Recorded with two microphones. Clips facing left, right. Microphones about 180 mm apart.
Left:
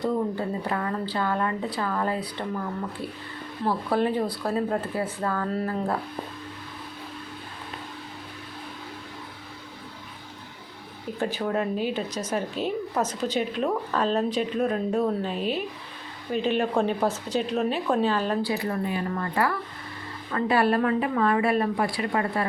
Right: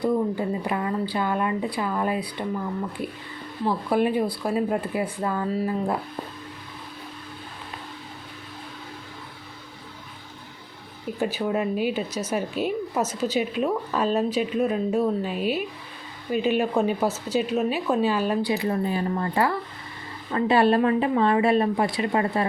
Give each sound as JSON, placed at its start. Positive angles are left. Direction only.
{"t": 0.0, "sound": "a woman's voice", "side_deg": -15}
{"t": 11.2, "sound": "a woman's voice", "side_deg": -5}